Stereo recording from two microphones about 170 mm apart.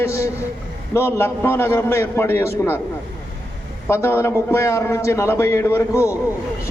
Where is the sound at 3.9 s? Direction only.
15° left (ahead or behind).